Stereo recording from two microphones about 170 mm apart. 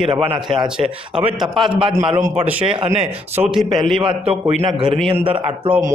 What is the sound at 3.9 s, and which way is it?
A man's voice, 30° right (ahead or behind).